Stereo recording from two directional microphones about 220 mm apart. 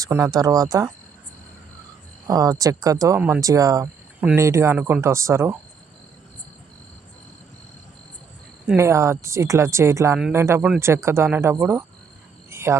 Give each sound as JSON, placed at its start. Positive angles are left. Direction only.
{"t": 0.0, "sound": "speech", "side_deg": -15}
{"t": 2.2, "sound": "speech", "side_deg": -15}
{"t": 8.6, "sound": "speech", "side_deg": -10}
{"t": 10.2, "sound": "speech", "side_deg": -5}
{"t": 12.5, "sound": "cricket", "side_deg": -10}